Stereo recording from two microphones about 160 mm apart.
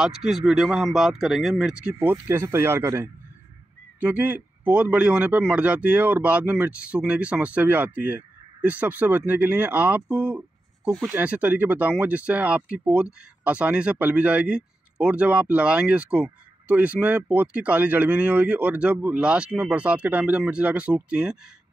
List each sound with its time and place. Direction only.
0.0 s speech: centre (ahead or behind)
2.0 s speech: 15° right (ahead or behind)